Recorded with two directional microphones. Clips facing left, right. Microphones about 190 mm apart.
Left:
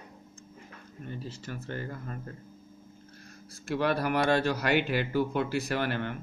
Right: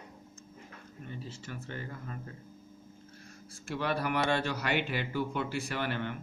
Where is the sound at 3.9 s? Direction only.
40° left (ahead or behind).